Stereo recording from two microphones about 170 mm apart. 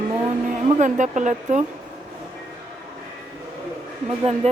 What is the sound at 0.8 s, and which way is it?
Speech, 45° right (ahead or behind).